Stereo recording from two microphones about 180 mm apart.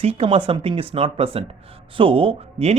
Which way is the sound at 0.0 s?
35° right (ahead or behind).